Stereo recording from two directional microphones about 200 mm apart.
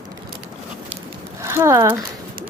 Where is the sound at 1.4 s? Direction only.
15° right (ahead or behind).